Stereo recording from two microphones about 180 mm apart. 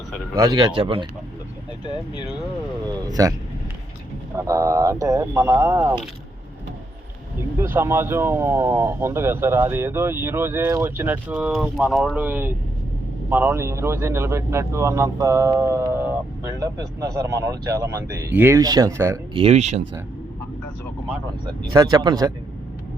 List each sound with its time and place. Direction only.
0.3 s speech: 25° right (ahead or behind)
2.9 s speech: 20° right (ahead or behind)
4.4 s speech: 15° right (ahead or behind)
7.6 s speech: 15° right (ahead or behind)
19.3 s speech: 35° right (ahead or behind)
21.7 s speech: 20° right (ahead or behind)